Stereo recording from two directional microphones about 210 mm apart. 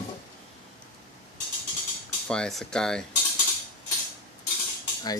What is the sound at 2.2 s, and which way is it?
Speech, centre (ahead or behind).